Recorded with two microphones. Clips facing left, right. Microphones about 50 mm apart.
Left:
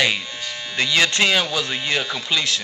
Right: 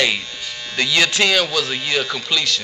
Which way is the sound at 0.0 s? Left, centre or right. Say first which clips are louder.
Right 1 dB; centre.